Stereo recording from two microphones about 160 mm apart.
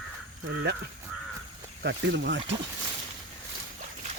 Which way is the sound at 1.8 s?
90° right.